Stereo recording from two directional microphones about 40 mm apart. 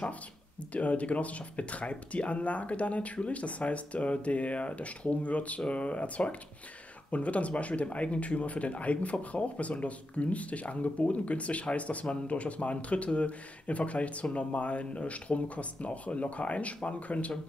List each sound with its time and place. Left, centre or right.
0.7 s speech: left